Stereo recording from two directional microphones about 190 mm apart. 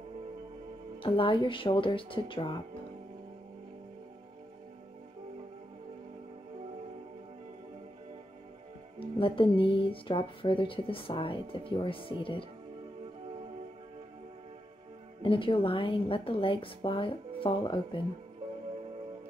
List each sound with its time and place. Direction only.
1.0 s speech: 25° left (ahead or behind)
9.0 s speech: 30° left (ahead or behind)
15.2 s speech: 25° left (ahead or behind)